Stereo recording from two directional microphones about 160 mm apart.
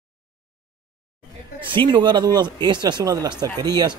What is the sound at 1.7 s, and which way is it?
Speech, 30° right (ahead or behind).